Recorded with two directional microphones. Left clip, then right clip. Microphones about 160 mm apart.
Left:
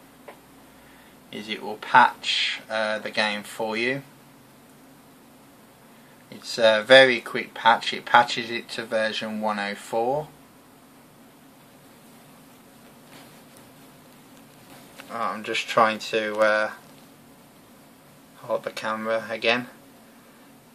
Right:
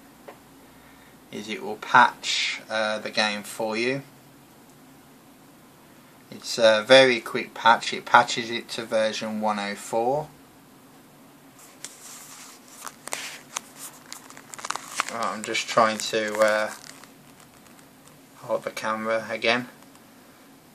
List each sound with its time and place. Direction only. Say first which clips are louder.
1.3 s speech: even; 10° right (ahead or behind)
6.4 s speech: even; 10° right (ahead or behind)
15.1 s speech: left 4 dB; 10° right (ahead or behind)
18.5 s speech: even; 5° right (ahead or behind)